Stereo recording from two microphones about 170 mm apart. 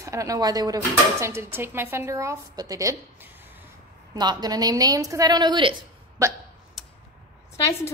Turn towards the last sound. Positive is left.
turn(degrees=15)  # may be behind; listen again after turning